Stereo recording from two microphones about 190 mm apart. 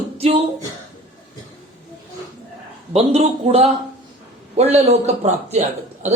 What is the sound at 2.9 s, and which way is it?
Speech, 30° right (ahead or behind).